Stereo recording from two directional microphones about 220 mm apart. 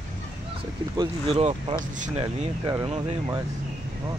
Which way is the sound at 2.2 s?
20° right (ahead or behind).